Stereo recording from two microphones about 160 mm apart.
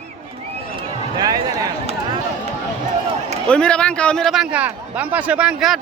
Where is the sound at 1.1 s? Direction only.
25° right (ahead or behind).